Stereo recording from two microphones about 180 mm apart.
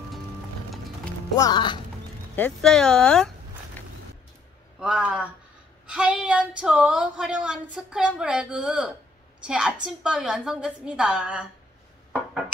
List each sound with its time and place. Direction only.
1.3 s speech: 20° left (ahead or behind)
2.3 s speech: 5° left (ahead or behind)
3.8 s a sound: 10° left (ahead or behind)
4.7 s speech: 5° right (ahead or behind)